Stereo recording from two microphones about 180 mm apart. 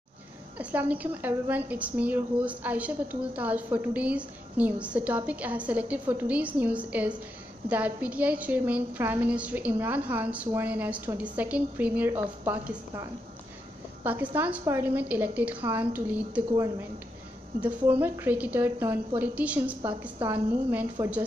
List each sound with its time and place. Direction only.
0.6 s a woman's voice: 10° right (ahead or behind)